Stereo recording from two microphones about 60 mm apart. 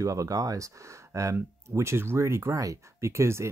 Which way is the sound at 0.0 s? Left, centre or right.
Right.